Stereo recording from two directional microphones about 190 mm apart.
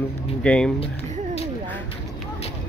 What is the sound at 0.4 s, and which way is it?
Speech, 5° left (ahead or behind).